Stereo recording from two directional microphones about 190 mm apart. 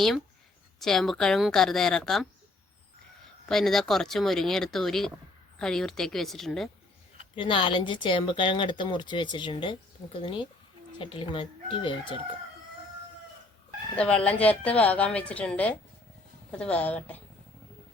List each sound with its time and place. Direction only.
0.8 s speech: centre (ahead or behind)
3.5 s speech: centre (ahead or behind)
7.3 s speech: 25° left (ahead or behind)
13.9 s a woman's voice: 5° left (ahead or behind)